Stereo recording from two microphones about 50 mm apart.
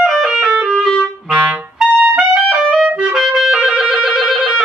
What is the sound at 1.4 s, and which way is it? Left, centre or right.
Music, right.